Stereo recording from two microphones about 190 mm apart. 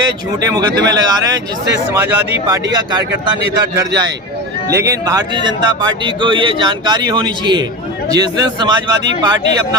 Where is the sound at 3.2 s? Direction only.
20° right (ahead or behind).